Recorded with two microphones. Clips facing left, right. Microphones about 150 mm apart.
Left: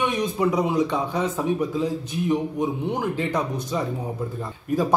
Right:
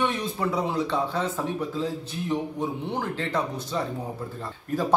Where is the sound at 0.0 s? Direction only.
15° left (ahead or behind).